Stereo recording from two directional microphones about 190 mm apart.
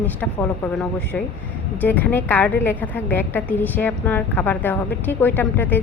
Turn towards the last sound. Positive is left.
turn(degrees=10)  # may be behind; listen again after turning